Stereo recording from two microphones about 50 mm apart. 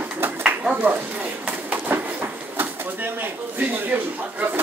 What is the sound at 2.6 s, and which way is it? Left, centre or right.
Speech, right.